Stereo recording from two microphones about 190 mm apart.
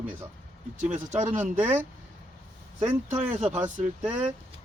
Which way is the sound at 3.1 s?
10° right (ahead or behind).